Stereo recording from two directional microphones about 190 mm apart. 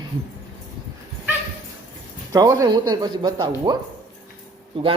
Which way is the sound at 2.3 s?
20° right (ahead or behind).